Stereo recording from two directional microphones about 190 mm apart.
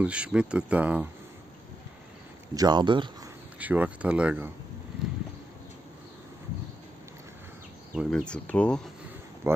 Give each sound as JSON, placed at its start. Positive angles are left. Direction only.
{"t": 0.0, "sound": "speech", "side_deg": -5}
{"t": 2.5, "sound": "speech", "side_deg": -20}
{"t": 3.5, "sound": "speech", "side_deg": -10}
{"t": 5.0, "sound": "a sound", "side_deg": 0}
{"t": 7.9, "sound": "speech", "side_deg": 0}